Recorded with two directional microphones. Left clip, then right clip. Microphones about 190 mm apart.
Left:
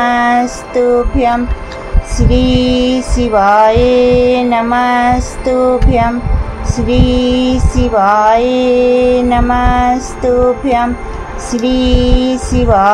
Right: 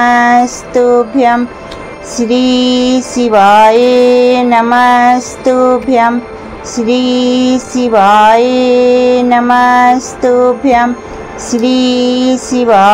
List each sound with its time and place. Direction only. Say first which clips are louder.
0.0 s music: right 4 dB; 20° right (ahead or behind)